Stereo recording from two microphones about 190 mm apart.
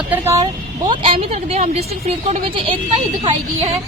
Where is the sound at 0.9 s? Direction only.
30° right (ahead or behind).